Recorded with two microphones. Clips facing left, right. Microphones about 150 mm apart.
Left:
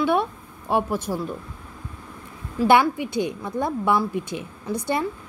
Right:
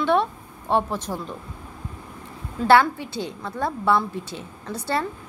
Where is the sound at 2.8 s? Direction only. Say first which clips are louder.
Left 4 dB; 15° left (ahead or behind).